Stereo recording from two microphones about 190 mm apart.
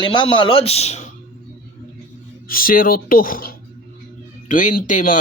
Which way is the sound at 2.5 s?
50° left (ahead or behind).